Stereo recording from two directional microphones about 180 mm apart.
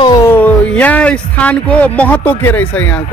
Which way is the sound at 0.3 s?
10° left (ahead or behind).